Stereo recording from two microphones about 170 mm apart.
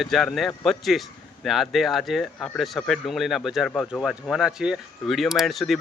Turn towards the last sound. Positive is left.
turn(degrees=0)  # may be behind; listen again after turning